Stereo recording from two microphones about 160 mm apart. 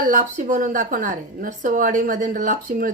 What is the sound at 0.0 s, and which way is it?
A woman's voice, 55° right (ahead or behind).